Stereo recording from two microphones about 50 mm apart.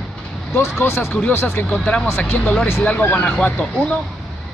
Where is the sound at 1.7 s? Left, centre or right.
Left.